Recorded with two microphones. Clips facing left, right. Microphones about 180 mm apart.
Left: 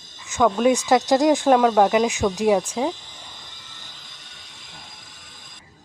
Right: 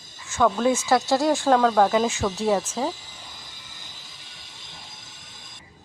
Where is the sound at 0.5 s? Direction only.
15° left (ahead or behind).